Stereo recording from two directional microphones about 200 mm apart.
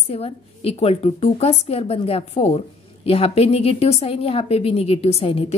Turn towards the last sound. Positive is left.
turn(degrees=30)  # may be behind; listen again after turning